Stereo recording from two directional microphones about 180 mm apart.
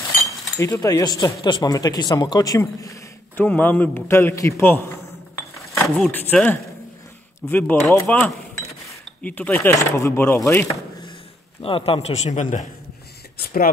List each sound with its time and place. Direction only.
0.2 s speech: 20° left (ahead or behind)
5.9 s speech: 5° left (ahead or behind)
11.6 s a man's voice: 30° left (ahead or behind)